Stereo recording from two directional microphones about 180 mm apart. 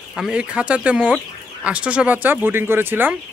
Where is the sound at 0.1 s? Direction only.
5° right (ahead or behind).